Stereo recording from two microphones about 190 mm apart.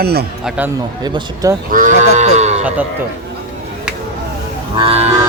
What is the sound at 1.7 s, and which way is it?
Livestock, 45° right (ahead or behind).